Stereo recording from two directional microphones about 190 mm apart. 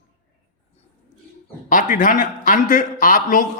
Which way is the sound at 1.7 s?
45° left (ahead or behind).